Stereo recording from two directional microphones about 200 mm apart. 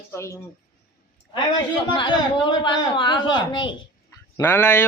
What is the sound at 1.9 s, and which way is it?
Speech, 25° left (ahead or behind).